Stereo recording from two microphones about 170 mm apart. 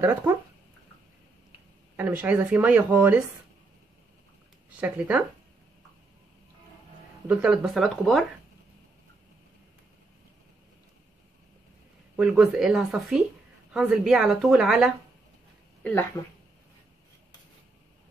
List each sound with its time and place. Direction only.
0.0 s speech: 15° right (ahead or behind)
2.0 s speech: 10° right (ahead or behind)
4.6 s speech: 10° right (ahead or behind)
7.2 s speech: 5° right (ahead or behind)
12.2 s speech: 5° right (ahead or behind)
15.8 s speech: 10° left (ahead or behind)